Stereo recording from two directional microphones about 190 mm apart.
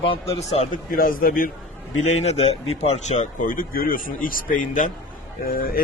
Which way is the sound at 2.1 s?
35° left (ahead or behind).